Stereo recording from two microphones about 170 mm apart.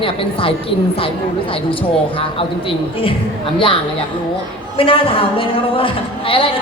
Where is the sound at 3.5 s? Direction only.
30° left (ahead or behind).